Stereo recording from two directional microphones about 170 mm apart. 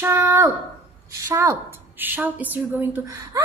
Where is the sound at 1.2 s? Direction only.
15° right (ahead or behind).